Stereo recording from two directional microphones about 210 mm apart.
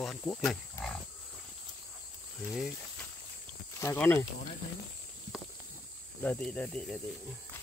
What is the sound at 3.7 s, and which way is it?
Speech, 15° left (ahead or behind).